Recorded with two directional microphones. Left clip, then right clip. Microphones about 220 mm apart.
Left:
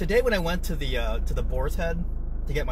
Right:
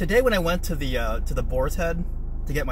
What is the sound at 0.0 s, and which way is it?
Speech, 15° right (ahead or behind).